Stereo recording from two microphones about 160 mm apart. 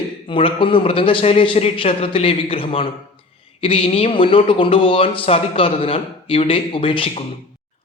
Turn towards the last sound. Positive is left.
turn(degrees=35)  # may be behind; listen again after turning